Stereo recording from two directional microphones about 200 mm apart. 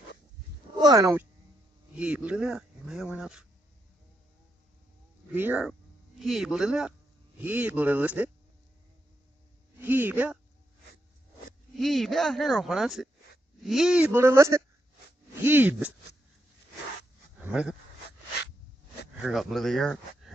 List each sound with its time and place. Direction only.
0.7 s speech: 20° right (ahead or behind)
2.0 s speech: 5° right (ahead or behind)
5.3 s speech: 10° right (ahead or behind)
9.8 s speech: 10° right (ahead or behind)
11.8 s speech: centre (ahead or behind)
17.4 s speech: 5° right (ahead or behind)
19.2 s speech: centre (ahead or behind)